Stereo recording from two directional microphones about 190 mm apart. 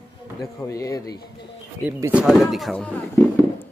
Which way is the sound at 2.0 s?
10° right (ahead or behind).